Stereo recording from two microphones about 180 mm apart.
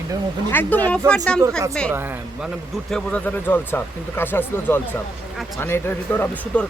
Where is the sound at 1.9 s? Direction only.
10° right (ahead or behind).